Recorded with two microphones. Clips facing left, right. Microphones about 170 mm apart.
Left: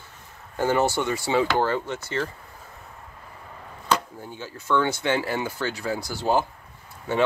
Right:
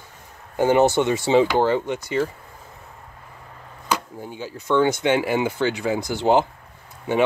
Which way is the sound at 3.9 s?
15° right (ahead or behind).